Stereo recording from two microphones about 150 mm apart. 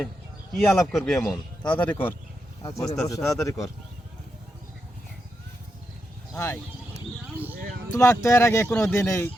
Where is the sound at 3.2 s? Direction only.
20° left (ahead or behind).